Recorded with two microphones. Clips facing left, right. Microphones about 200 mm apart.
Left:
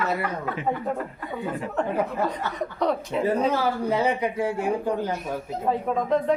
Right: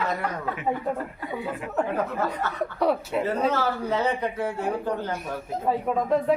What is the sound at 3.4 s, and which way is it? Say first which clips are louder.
Speech: left 1 dB; 15° left (ahead or behind).